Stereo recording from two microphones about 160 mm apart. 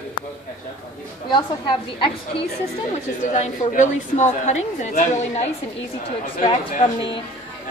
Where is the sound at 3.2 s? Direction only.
50° left (ahead or behind).